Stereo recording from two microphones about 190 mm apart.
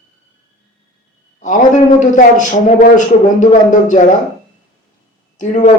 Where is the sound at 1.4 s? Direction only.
40° left (ahead or behind).